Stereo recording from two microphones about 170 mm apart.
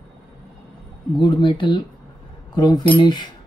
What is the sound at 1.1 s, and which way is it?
Speech, 25° left (ahead or behind).